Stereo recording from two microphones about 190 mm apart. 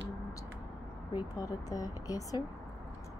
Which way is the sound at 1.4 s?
20° left (ahead or behind).